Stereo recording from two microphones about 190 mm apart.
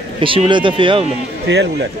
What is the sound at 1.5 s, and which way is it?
Speech, 65° right (ahead or behind).